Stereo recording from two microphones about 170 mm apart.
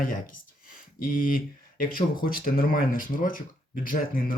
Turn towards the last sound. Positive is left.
turn(degrees=55)  # may be behind; listen again after turning